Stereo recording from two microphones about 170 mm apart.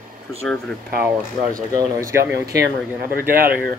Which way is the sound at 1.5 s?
20° right (ahead or behind).